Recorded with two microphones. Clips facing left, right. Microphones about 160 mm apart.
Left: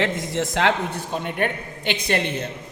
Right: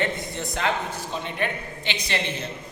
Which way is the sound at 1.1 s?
50° left (ahead or behind).